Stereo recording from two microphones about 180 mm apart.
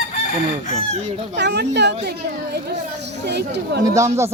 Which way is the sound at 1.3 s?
70° right (ahead or behind).